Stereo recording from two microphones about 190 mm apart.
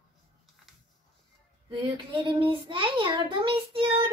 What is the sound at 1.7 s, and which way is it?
A child's voice, 25° right (ahead or behind).